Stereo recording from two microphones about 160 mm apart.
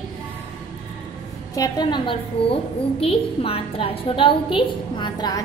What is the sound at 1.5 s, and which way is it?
A woman's voice, 25° left (ahead or behind).